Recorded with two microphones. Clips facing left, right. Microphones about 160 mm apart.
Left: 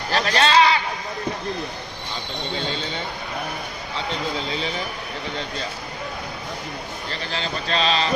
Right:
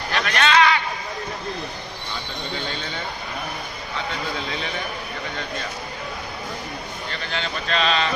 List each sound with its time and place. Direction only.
0.1 s a man's voice: 30° left (ahead or behind)
7.1 s speech: 35° left (ahead or behind)